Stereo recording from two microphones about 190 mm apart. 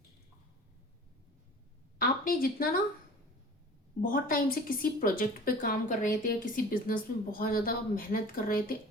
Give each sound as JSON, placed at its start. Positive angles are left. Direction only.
{"t": 2.0, "sound": "a woman's voice", "side_deg": 50}
{"t": 4.0, "sound": "speech", "side_deg": 45}